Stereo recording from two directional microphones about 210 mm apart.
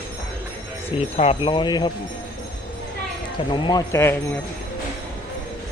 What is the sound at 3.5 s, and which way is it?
Speech, 20° left (ahead or behind).